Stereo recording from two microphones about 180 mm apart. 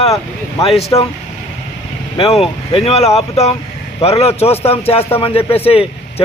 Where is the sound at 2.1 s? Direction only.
30° left (ahead or behind).